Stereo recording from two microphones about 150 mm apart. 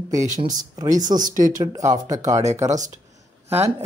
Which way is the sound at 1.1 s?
60° right (ahead or behind).